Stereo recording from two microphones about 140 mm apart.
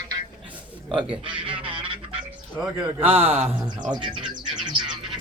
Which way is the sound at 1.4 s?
40° right (ahead or behind).